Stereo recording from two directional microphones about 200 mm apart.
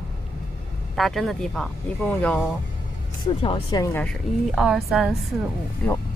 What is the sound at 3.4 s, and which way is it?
Speech, 20° left (ahead or behind).